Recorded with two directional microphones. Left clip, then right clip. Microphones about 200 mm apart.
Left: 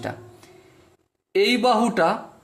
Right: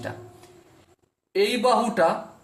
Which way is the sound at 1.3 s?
45° left (ahead or behind).